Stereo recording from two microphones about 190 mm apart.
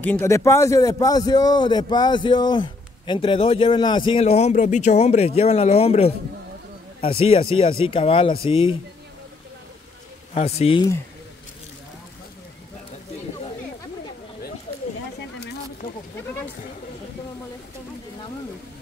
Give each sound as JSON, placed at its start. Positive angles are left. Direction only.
{"t": 0.0, "sound": "a man's voice", "side_deg": 10}
{"t": 10.3, "sound": "speech", "side_deg": 30}